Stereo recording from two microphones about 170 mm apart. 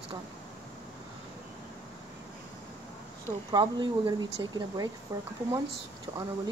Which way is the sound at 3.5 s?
25° right (ahead or behind).